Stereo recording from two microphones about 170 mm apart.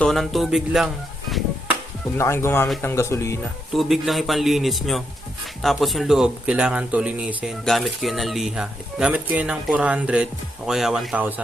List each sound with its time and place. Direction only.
0.0 s speech: centre (ahead or behind)
2.1 s speech: 15° left (ahead or behind)
3.7 s speech: centre (ahead or behind)